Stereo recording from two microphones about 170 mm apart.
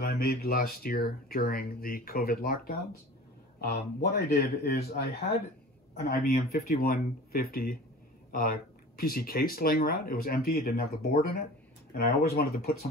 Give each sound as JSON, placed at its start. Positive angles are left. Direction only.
{"t": 0.0, "sound": "speech", "side_deg": 65}